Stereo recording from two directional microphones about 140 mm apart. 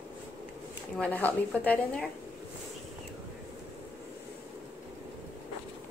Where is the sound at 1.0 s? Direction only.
10° left (ahead or behind).